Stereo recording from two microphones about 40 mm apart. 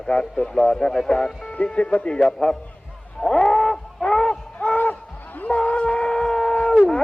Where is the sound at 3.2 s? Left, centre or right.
Centre.